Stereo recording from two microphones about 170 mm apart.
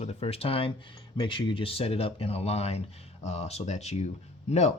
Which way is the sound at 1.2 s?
30° left (ahead or behind).